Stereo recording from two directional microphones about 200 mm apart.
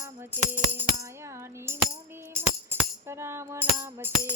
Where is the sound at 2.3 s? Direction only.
10° right (ahead or behind).